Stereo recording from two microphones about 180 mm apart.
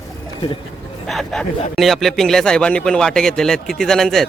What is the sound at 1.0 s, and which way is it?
Speech, centre (ahead or behind).